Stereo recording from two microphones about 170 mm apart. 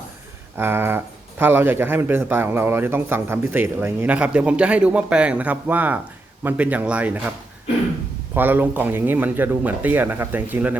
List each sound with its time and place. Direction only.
0.5 s speech: 10° right (ahead or behind)
8.3 s speech: 10° right (ahead or behind)